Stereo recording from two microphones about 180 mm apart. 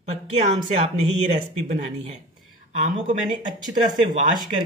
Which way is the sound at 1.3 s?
40° right (ahead or behind).